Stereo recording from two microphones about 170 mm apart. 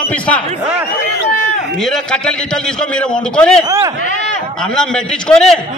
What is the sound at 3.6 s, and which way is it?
Speech, 20° right (ahead or behind).